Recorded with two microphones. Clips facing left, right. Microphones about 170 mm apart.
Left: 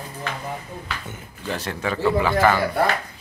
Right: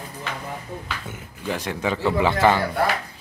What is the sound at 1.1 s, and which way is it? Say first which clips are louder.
A man's voice: right 3 dB; 10° right (ahead or behind).